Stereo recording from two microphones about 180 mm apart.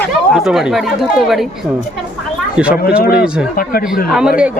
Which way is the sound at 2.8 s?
55° left (ahead or behind).